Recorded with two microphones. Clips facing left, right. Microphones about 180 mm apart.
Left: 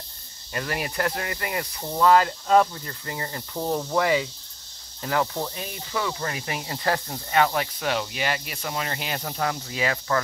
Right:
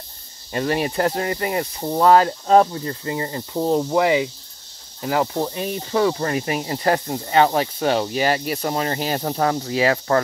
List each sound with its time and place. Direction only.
0.5 s speech: 30° right (ahead or behind)
5.8 s speech: 40° right (ahead or behind)